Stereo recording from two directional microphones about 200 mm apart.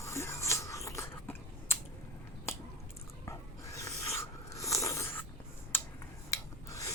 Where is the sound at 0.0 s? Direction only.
15° left (ahead or behind).